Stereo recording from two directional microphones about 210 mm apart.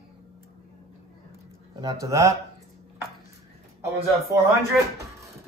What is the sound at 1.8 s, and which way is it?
Speech, 15° right (ahead or behind).